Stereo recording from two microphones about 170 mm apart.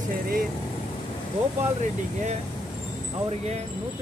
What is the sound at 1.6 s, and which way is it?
Speech, 45° right (ahead or behind).